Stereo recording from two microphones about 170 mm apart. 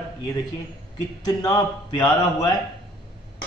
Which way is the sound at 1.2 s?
20° left (ahead or behind).